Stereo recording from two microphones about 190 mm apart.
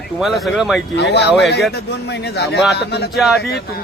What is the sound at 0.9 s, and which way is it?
A man's voice, 65° left (ahead or behind).